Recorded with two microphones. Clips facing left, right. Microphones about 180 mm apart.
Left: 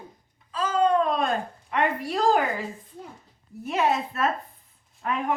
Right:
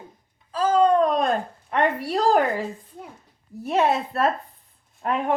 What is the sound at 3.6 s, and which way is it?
Speech, 35° right (ahead or behind).